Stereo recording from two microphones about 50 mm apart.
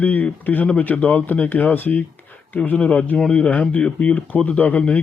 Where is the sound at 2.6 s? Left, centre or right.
Left.